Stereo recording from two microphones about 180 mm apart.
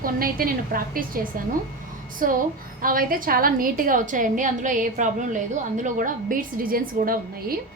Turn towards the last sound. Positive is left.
turn(degrees=-55)  # may be behind; listen again after turning